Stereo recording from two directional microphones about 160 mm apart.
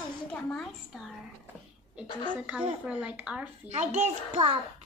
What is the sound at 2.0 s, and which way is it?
Speech, 30° left (ahead or behind).